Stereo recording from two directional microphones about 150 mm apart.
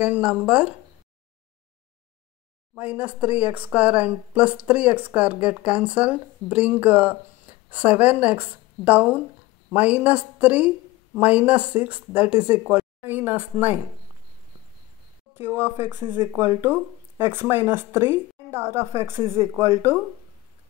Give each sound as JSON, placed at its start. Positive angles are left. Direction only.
{"t": 0.0, "sound": "speech", "side_deg": -10}
{"t": 2.7, "sound": "speech", "side_deg": -10}
{"t": 15.3, "sound": "speech", "side_deg": -15}